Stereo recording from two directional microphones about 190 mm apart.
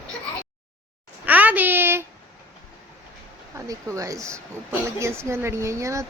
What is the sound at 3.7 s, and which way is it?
A woman's voice, 15° right (ahead or behind).